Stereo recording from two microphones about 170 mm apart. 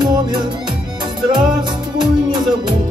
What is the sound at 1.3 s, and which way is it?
Music, 25° right (ahead or behind).